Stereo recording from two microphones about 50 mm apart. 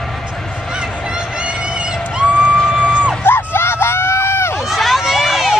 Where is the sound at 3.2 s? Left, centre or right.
Left.